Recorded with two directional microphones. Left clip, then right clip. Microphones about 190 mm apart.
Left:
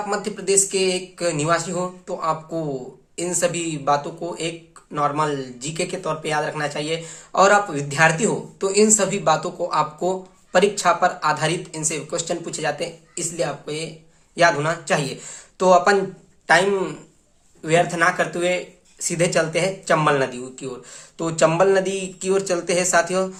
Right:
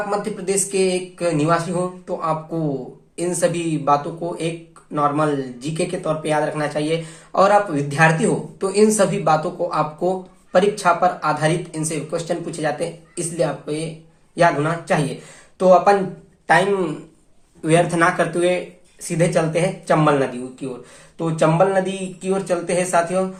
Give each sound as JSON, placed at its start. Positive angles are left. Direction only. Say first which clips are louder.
{"t": 0.1, "sound": "a man's voice", "louder": "even", "side_deg": 20}
{"t": 17.6, "sound": "speech", "louder": "right 2 dB", "side_deg": 0}
{"t": 18.9, "sound": "speech", "louder": "right 1 dB", "side_deg": 25}